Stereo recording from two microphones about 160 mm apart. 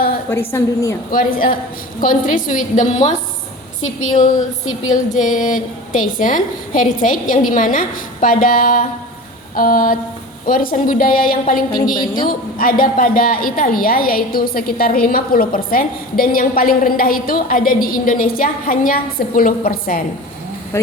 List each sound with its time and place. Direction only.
0.3 s a woman's voice: 15° left (ahead or behind)
1.1 s a woman's voice: 60° left (ahead or behind)
4.9 s a woman's voice: 55° left (ahead or behind)
11.9 s a woman's voice: 25° left (ahead or behind)
12.3 s a woman's voice: 60° left (ahead or behind)
20.7 s a woman's voice: 15° left (ahead or behind)